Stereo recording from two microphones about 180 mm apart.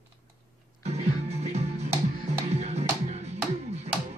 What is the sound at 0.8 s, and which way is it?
Music, 35° right (ahead or behind).